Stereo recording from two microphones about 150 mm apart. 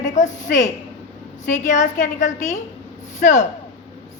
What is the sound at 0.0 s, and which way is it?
A woman's voice, 55° left (ahead or behind).